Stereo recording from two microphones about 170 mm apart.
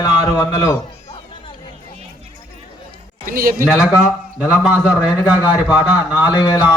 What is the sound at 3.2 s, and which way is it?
Speech, 55° right (ahead or behind).